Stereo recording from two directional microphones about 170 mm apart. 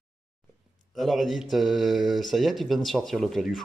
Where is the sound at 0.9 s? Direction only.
Centre (ahead or behind).